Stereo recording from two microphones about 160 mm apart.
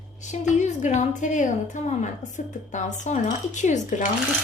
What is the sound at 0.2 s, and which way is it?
A woman's voice, 50° left (ahead or behind).